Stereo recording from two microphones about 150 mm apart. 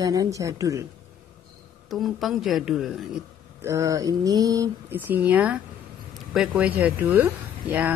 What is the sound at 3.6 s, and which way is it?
A woman's voice, 20° right (ahead or behind).